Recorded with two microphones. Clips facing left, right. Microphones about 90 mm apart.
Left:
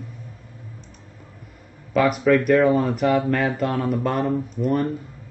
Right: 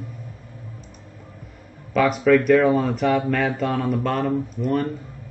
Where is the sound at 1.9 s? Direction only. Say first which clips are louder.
Right 1 dB; 5° left (ahead or behind).